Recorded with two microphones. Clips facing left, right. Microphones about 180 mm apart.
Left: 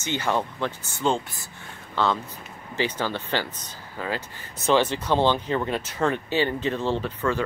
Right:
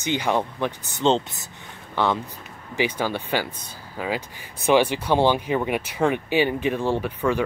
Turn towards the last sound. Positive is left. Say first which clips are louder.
# right 2 dB
turn(degrees=-15)  # may be behind; listen again after turning